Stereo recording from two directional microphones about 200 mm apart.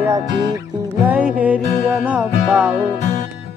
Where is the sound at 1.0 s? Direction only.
5° right (ahead or behind).